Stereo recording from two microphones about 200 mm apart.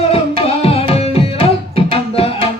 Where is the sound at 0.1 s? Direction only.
30° left (ahead or behind).